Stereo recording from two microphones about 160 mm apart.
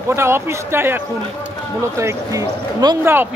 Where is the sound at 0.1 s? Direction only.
15° right (ahead or behind).